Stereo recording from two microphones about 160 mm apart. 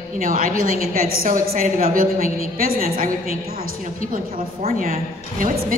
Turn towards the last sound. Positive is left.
turn(degrees=-60)  # may be behind; listen again after turning